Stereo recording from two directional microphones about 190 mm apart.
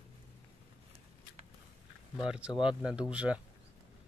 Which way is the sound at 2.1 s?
5° right (ahead or behind).